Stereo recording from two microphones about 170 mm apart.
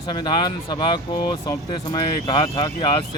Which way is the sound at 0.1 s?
25° left (ahead or behind).